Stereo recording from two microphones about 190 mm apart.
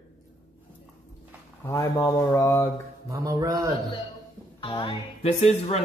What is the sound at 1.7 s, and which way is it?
Speech, 15° left (ahead or behind).